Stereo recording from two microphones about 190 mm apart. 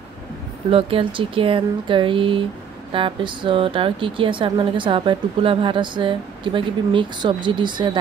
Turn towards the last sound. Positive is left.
turn(degrees=-25)  # may be behind; listen again after turning